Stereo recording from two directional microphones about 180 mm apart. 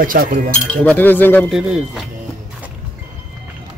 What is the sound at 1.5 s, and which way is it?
Speech, 5° right (ahead or behind).